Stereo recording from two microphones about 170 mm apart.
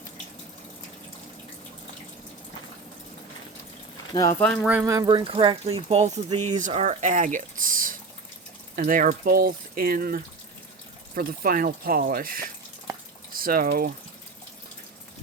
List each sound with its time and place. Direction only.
4.1 s speech: 20° left (ahead or behind)
4.6 s speech: 10° right (ahead or behind); by 13.9 s 55° right (ahead or behind)